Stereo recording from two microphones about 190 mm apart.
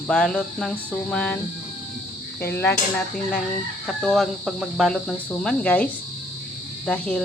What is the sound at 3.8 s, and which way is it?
Speech, centre (ahead or behind).